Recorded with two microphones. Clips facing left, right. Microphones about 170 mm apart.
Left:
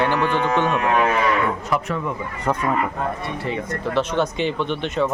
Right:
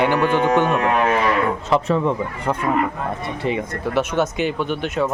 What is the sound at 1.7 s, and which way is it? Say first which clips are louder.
Speech: right 5 dB; 30° right (ahead or behind).